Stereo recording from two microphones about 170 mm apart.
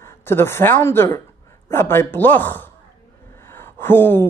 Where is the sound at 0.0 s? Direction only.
15° left (ahead or behind).